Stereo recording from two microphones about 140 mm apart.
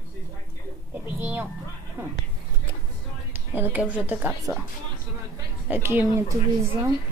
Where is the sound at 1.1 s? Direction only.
15° right (ahead or behind).